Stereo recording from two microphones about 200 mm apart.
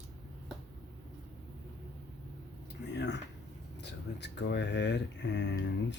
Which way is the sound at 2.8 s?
60° left (ahead or behind).